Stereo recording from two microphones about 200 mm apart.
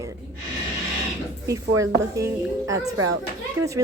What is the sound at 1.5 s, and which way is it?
Speech, 15° right (ahead or behind).